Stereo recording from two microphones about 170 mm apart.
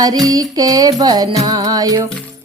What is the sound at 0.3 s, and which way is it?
Music, 20° right (ahead or behind).